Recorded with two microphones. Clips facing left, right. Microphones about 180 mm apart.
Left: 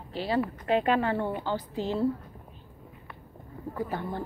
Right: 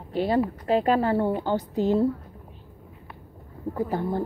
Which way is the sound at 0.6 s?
35° right (ahead or behind).